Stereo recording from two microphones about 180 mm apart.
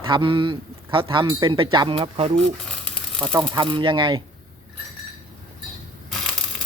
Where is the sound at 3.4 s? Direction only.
25° right (ahead or behind).